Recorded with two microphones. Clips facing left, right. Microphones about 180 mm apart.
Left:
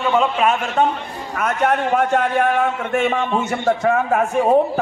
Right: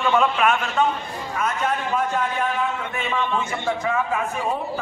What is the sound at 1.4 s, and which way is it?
A man's voice, 65° left (ahead or behind).